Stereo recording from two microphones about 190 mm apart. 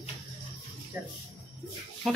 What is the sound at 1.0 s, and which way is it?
Speech, 5° right (ahead or behind).